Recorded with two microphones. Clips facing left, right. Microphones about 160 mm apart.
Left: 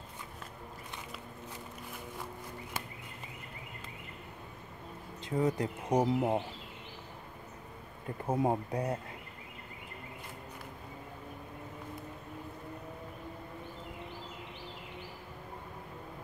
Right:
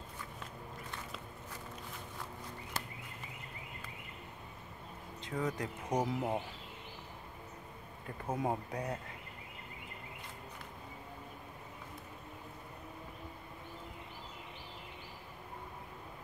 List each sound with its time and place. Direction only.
5.2 s speech: 30° left (ahead or behind)
8.3 s speech: 30° left (ahead or behind)